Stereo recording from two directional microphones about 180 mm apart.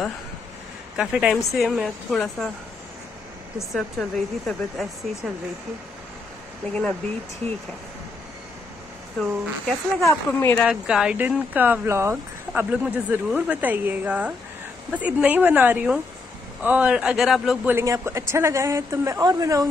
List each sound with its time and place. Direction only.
0.9 s speech: 5° right (ahead or behind)
3.5 s speech: centre (ahead or behind)
6.7 s speech: 5° left (ahead or behind)
9.2 s speech: centre (ahead or behind)
17.7 s speech: 15° right (ahead or behind)